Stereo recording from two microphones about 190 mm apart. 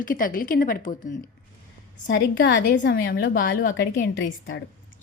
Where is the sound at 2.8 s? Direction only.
60° left (ahead or behind).